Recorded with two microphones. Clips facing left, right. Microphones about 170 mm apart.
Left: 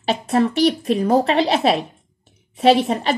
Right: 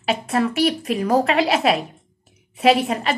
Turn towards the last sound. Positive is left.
turn(degrees=30)  # may be behind; listen again after turning